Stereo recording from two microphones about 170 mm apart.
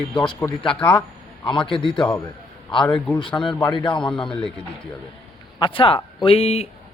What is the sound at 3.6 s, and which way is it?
Speech, 25° left (ahead or behind).